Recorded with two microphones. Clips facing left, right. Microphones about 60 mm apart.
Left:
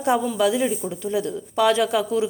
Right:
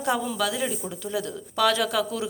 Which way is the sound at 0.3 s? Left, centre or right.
Centre.